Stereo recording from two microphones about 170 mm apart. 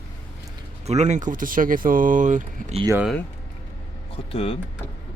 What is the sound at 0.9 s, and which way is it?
Speech, 40° right (ahead or behind).